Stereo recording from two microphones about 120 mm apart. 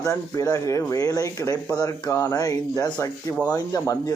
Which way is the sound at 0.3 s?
30° left (ahead or behind).